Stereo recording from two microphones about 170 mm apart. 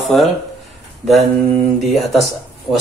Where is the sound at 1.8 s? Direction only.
Centre (ahead or behind).